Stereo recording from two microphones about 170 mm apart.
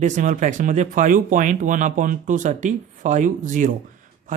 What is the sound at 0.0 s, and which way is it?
Speech, 50° right (ahead or behind).